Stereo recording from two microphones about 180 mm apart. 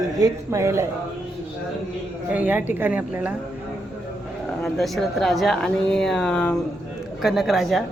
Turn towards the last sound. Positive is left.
turn(degrees=0)  # may be behind; listen again after turning